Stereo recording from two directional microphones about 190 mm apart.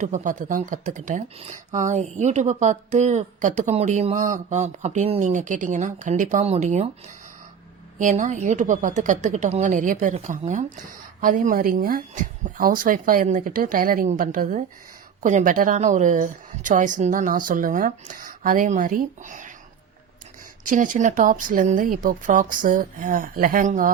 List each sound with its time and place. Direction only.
0.0 s speech: 40° right (ahead or behind)
7.9 s speech: 40° right (ahead or behind)
20.7 s speech: 45° right (ahead or behind)